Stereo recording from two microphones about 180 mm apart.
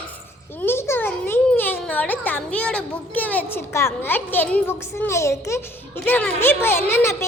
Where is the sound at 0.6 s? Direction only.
15° left (ahead or behind).